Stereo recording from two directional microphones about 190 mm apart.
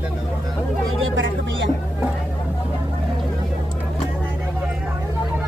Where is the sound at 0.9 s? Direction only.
75° right (ahead or behind).